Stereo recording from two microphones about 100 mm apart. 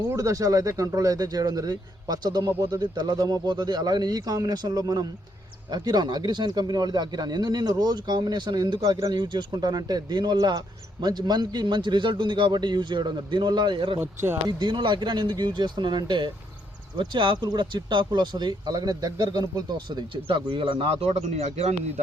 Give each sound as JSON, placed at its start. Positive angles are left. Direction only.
{"t": 0.2, "sound": "speech", "side_deg": -35}
{"t": 14.0, "sound": "speech", "side_deg": -25}
{"t": 14.4, "sound": "speech", "side_deg": -50}
{"t": 20.2, "sound": "speech", "side_deg": -60}